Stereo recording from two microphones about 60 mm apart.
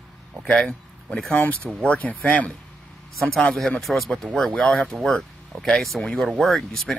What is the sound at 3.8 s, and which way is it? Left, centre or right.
Speech, centre.